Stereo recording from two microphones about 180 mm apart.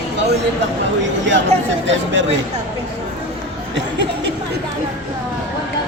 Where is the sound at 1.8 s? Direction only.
90° right.